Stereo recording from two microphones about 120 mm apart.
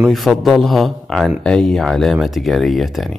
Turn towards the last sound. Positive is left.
turn(degrees=0)  # may be behind; listen again after turning